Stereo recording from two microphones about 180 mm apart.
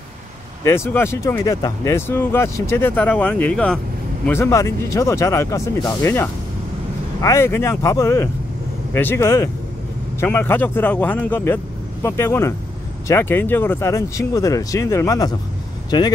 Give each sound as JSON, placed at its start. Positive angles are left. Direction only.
{"t": 0.7, "sound": "speech", "side_deg": 15}
{"t": 4.3, "sound": "speech", "side_deg": 15}